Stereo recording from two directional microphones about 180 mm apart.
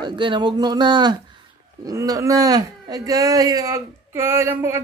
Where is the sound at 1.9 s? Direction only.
20° right (ahead or behind).